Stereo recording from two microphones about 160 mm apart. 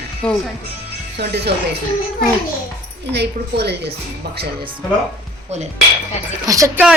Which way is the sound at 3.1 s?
90° right.